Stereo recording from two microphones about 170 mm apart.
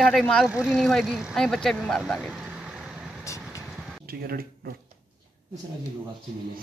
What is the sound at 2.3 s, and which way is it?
Vehicle, 5° right (ahead or behind).